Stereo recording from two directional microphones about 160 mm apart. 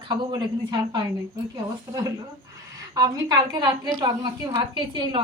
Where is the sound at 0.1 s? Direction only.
30° right (ahead or behind).